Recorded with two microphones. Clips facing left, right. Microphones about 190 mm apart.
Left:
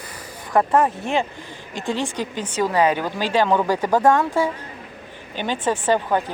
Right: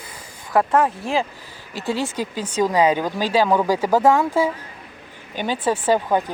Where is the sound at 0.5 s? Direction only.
5° right (ahead or behind).